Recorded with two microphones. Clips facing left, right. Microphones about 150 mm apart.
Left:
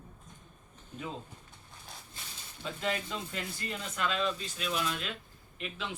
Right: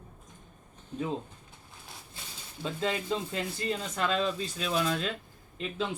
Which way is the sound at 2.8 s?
30° right (ahead or behind).